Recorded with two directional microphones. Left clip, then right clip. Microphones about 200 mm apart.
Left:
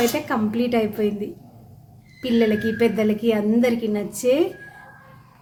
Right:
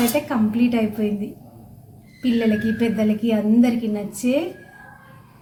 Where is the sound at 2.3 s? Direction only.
60° left (ahead or behind).